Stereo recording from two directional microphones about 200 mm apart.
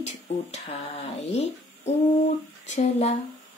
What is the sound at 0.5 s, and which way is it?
Speech, 30° left (ahead or behind).